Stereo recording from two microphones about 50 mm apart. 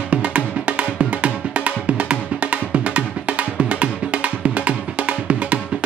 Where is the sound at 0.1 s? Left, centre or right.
Right.